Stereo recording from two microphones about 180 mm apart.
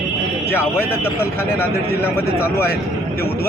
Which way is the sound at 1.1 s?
10° left (ahead or behind).